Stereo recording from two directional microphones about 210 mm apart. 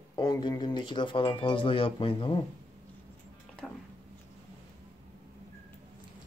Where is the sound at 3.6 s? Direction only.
5° left (ahead or behind).